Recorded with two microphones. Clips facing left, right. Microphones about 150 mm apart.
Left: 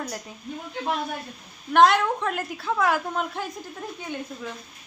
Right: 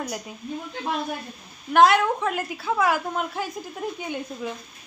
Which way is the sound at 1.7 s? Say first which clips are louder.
Right 1 dB; 5° right (ahead or behind).